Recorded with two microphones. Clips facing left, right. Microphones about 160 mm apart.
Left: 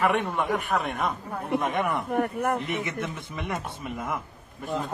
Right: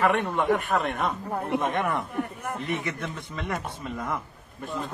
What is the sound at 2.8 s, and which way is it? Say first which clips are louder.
A man's voice: left 1 dB; 20° left (ahead or behind).